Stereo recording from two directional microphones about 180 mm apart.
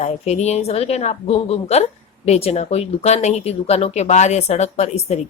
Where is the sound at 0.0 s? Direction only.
40° left (ahead or behind).